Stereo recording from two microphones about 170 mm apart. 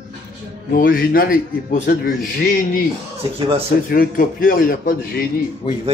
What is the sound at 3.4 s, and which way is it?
Speech, 35° right (ahead or behind).